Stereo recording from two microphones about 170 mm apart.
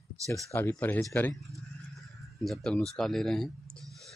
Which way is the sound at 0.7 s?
10° left (ahead or behind).